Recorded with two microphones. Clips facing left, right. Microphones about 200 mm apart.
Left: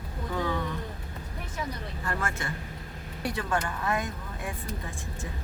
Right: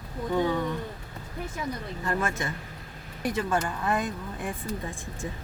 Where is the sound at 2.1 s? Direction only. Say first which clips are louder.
Right 4 dB; 20° right (ahead or behind).